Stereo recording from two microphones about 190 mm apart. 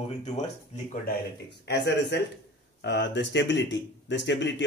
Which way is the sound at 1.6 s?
65° left (ahead or behind).